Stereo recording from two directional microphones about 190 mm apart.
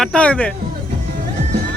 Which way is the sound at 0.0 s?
5° left (ahead or behind).